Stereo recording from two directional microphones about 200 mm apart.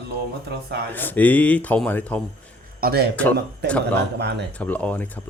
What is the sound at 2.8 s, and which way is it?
Speech, 50° right (ahead or behind).